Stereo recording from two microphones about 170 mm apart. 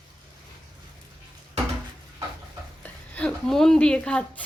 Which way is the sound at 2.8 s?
10° left (ahead or behind).